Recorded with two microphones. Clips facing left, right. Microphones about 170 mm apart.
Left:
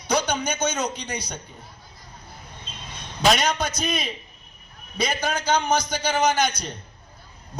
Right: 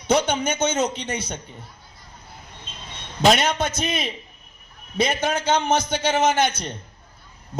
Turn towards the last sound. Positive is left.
turn(degrees=-25)  # may be behind; listen again after turning